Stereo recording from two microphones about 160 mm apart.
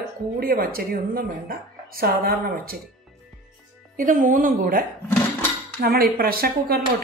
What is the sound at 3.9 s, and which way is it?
A woman's voice, 55° right (ahead or behind).